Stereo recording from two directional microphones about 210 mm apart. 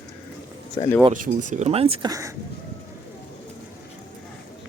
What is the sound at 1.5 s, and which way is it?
Speech, 30° right (ahead or behind).